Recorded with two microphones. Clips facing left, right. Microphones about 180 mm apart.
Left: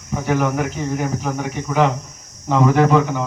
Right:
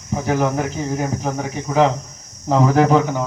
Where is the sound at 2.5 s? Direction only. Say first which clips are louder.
Even; 30° right (ahead or behind).